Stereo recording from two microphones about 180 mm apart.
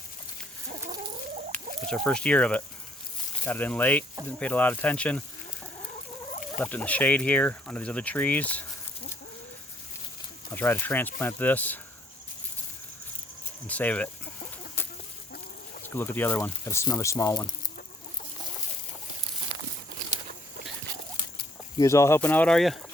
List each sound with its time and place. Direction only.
1.5 s speech: 5° left (ahead or behind)
6.6 s speech: 10° left (ahead or behind)
10.5 s speech: 10° left (ahead or behind)
13.7 s speech: 10° left (ahead or behind)
16.0 s speech: 10° left (ahead or behind)
21.8 s speech: 15° left (ahead or behind)